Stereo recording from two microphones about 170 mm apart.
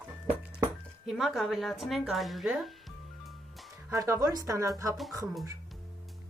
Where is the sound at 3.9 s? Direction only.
20° right (ahead or behind).